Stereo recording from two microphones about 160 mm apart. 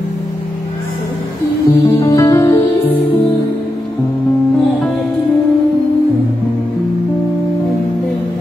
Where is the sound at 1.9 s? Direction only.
20° left (ahead or behind).